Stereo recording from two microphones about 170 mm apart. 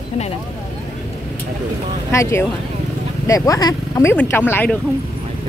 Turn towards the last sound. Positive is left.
turn(degrees=10)  # may be behind; listen again after turning